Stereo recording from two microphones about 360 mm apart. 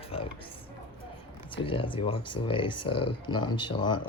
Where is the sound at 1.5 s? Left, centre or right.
Centre.